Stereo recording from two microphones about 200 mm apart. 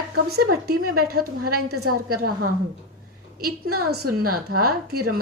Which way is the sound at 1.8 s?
90° right.